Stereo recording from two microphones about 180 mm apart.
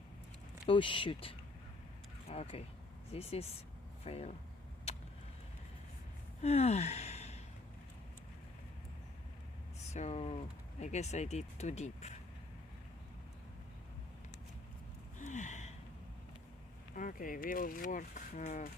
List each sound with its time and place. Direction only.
0.7 s speech: 30° left (ahead or behind)
4.9 s vehicle: 35° left (ahead or behind)
6.4 s a sound: 35° left (ahead or behind)
9.9 s speech: 35° left (ahead or behind)
15.2 s gasp: 40° left (ahead or behind)
16.9 s speech: 50° left (ahead or behind)